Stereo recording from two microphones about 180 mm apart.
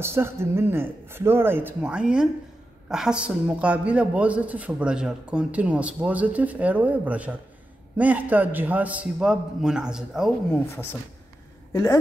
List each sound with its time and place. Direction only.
0.0 s a man's voice: 15° right (ahead or behind)
10.7 s a woman's voice: 15° left (ahead or behind)